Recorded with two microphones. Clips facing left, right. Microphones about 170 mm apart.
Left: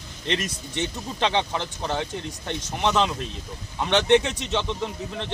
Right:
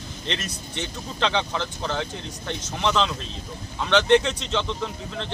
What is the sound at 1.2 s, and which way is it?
Speech, 20° left (ahead or behind).